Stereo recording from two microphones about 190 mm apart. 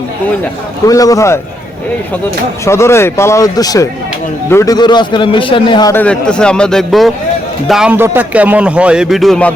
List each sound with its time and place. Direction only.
0.9 s speech: 20° left (ahead or behind)
2.6 s a man's voice: 15° left (ahead or behind)
5.9 s a man's voice: 5° left (ahead or behind)